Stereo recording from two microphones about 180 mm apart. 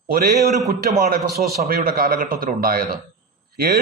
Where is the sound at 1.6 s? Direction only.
55° right (ahead or behind).